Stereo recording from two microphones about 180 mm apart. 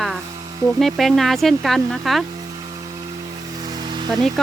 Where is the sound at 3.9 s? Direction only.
25° right (ahead or behind).